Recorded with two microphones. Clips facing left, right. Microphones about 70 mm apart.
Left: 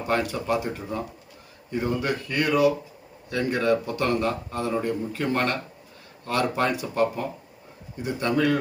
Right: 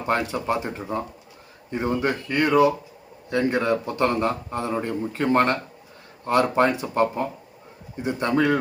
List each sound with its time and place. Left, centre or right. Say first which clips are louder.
0.1 s a man's voice: right 1 dB; right